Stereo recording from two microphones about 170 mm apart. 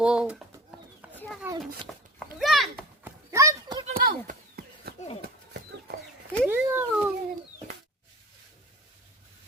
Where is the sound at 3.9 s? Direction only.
60° right (ahead or behind).